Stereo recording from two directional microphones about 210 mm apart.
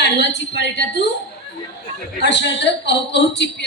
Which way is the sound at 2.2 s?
55° left (ahead or behind).